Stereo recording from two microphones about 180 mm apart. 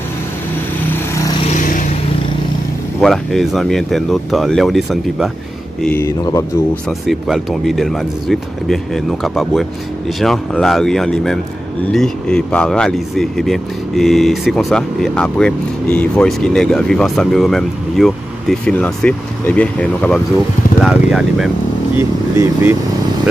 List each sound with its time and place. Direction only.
1.5 s vehicle: 45° left (ahead or behind)
3.0 s speech: centre (ahead or behind)
6.0 s speech: 20° left (ahead or behind)
6.7 s speech: centre (ahead or behind)
20.8 s speech: 5° right (ahead or behind)